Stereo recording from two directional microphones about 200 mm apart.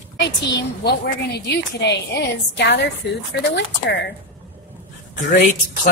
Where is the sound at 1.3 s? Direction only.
60° left (ahead or behind).